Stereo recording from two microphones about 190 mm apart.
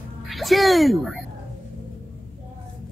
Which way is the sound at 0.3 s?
Centre (ahead or behind).